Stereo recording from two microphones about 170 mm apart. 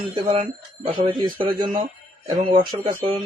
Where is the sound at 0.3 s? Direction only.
35° right (ahead or behind).